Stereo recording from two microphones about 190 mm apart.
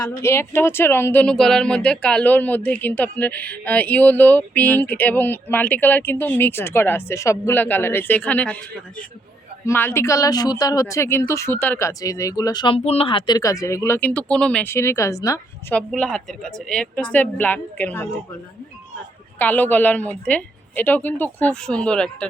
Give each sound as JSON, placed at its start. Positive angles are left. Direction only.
{"t": 0.2, "sound": "speech", "side_deg": 15}
{"t": 9.6, "sound": "speech", "side_deg": 10}
{"t": 15.7, "sound": "speech", "side_deg": 5}
{"t": 19.4, "sound": "speech", "side_deg": 10}